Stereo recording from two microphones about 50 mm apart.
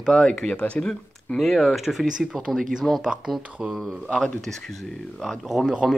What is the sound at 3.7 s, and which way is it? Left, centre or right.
Speech, centre.